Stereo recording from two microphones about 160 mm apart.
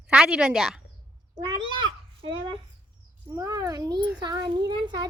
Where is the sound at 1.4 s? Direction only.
30° right (ahead or behind).